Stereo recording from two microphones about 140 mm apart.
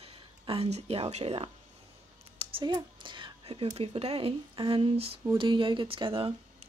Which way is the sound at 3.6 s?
45° right (ahead or behind).